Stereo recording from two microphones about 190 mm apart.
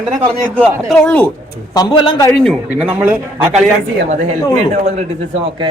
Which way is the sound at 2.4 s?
5° right (ahead or behind).